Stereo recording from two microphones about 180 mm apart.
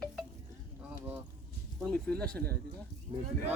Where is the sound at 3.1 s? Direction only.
30° right (ahead or behind).